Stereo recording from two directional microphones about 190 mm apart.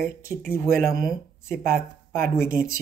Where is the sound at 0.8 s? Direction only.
50° right (ahead or behind).